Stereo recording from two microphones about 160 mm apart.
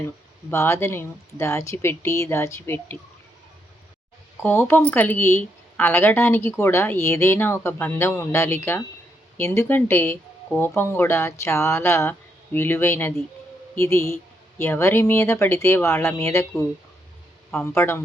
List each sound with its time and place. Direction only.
0.5 s speech: 15° left (ahead or behind)
4.4 s speech: 10° left (ahead or behind)
17.5 s speech: 10° left (ahead or behind)